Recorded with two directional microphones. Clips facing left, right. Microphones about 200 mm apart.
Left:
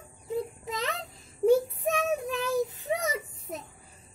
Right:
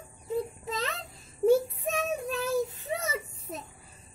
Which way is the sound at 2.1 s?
15° left (ahead or behind).